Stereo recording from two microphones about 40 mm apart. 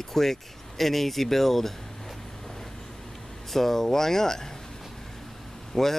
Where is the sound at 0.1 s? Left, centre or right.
Centre.